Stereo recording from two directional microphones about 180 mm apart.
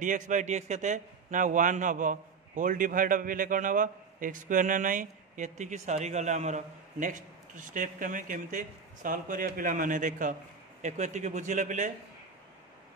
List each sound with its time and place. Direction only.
0.0 s a man's voice: 45° right (ahead or behind)